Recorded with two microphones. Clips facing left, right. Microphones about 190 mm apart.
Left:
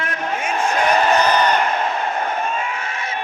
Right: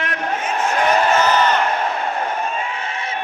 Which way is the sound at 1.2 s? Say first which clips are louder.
Even; 15° left (ahead or behind).